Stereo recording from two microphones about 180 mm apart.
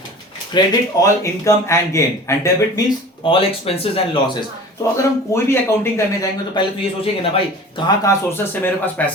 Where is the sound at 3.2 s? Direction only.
30° left (ahead or behind).